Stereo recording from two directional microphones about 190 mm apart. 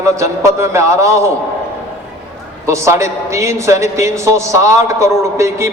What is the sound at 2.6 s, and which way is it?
A man's voice, 15° right (ahead or behind).